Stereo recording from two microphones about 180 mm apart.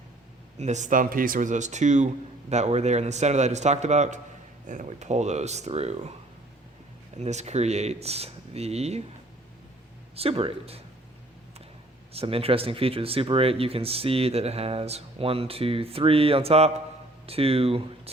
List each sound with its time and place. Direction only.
0.6 s speech: 40° right (ahead or behind)
7.2 s speech: 40° right (ahead or behind)
10.2 s speech: 30° right (ahead or behind)
12.1 s speech: 30° right (ahead or behind)